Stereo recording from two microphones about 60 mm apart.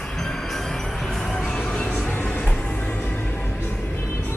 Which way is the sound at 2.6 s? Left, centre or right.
Centre.